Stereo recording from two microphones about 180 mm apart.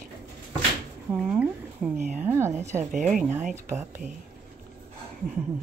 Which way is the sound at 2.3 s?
15° right (ahead or behind).